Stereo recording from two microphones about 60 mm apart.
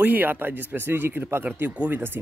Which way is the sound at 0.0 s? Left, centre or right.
Right.